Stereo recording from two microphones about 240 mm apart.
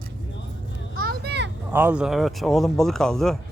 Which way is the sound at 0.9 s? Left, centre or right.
Right.